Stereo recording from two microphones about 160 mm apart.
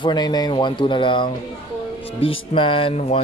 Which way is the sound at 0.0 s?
25° left (ahead or behind).